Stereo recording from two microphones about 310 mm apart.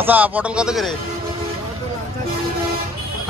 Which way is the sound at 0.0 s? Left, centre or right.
Centre.